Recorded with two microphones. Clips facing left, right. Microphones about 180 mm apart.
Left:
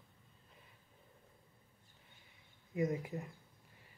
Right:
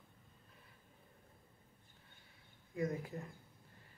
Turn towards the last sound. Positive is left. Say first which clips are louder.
# left 3 dB
turn(degrees=20)  # may be behind; listen again after turning